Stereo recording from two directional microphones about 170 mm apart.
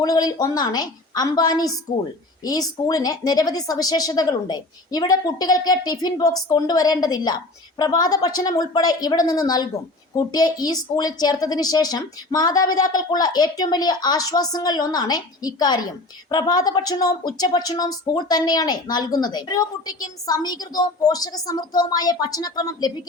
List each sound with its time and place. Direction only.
0.0 s speech: 20° left (ahead or behind)